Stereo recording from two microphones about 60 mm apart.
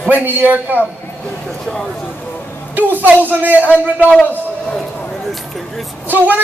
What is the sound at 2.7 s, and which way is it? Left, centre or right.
A woman's voice, right.